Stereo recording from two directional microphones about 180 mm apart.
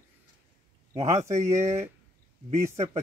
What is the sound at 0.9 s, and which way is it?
Speech, 40° right (ahead or behind).